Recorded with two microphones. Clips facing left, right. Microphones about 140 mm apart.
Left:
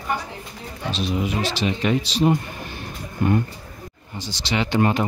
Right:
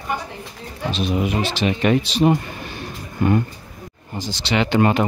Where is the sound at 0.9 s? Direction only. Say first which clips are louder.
Right 3 dB; 55° right (ahead or behind).